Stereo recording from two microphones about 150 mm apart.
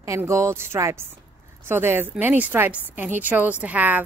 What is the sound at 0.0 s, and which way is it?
A woman's voice, 20° right (ahead or behind).